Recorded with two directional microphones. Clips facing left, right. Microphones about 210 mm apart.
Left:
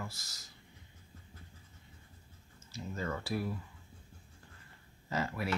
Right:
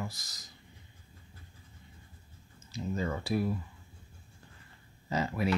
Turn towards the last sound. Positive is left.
turn(degrees=-20)  # may be behind; listen again after turning